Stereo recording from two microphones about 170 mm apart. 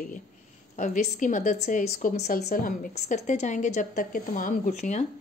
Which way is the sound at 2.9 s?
45° left (ahead or behind).